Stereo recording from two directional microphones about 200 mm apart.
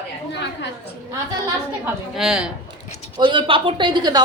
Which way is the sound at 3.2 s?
25° right (ahead or behind).